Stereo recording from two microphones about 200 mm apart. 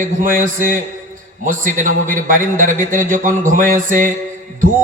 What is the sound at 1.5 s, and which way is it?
A man's voice, 40° right (ahead or behind).